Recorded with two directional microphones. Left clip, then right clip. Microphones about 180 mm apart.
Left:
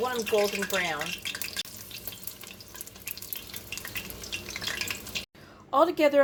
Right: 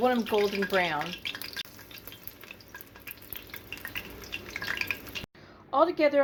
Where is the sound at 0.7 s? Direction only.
45° right (ahead or behind).